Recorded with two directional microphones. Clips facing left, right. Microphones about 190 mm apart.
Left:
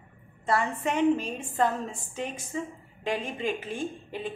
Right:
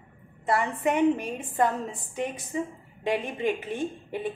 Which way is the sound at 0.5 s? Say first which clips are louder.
Right 2 dB; 15° right (ahead or behind).